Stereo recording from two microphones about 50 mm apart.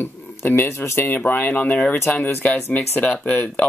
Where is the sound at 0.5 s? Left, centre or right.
Left.